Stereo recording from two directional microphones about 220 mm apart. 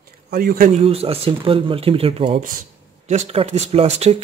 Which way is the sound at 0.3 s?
40° right (ahead or behind).